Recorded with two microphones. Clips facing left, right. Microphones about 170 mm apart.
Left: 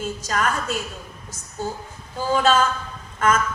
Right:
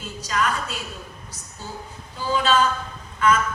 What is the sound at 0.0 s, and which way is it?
Speech, 45° left (ahead or behind).